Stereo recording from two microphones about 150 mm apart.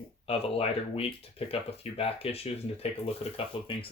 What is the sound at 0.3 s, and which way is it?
Speech, 40° left (ahead or behind).